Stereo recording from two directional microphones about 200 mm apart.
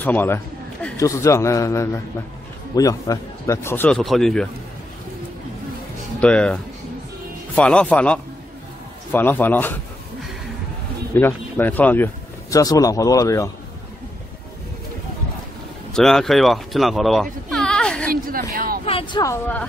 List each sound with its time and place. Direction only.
0.0 s speech: 10° left (ahead or behind)
6.2 s speech: 5° left (ahead or behind)
11.1 s speech: 10° left (ahead or behind)
15.9 s speech: centre (ahead or behind)
18.1 s a sound: 45° right (ahead or behind)
18.5 s vehicle: 45° right (ahead or behind)
18.9 s speech: 25° left (ahead or behind)
19.2 s speech: 10° left (ahead or behind)